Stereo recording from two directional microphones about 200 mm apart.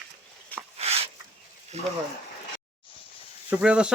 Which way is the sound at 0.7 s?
30° right (ahead or behind).